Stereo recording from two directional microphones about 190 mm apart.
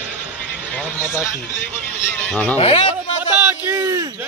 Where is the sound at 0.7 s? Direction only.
15° left (ahead or behind).